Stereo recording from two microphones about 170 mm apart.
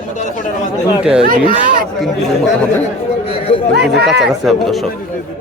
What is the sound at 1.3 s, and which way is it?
Speech, 55° right (ahead or behind).